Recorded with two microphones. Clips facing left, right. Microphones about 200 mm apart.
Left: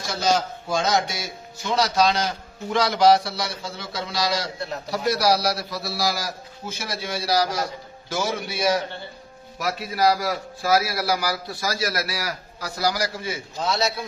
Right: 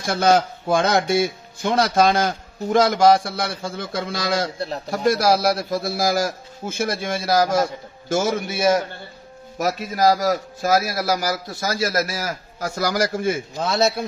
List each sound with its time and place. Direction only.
0.0 s speech: 55° right (ahead or behind)